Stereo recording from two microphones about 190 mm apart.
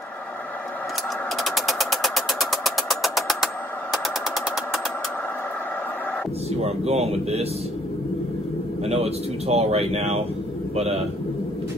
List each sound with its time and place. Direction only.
1.4 s engine: centre (ahead or behind)
6.6 s a man's voice: 35° right (ahead or behind)
8.8 s a man's voice: 35° right (ahead or behind)